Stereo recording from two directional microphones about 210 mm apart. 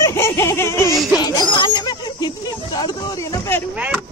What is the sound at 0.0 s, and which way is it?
Baby laughter, 15° left (ahead or behind).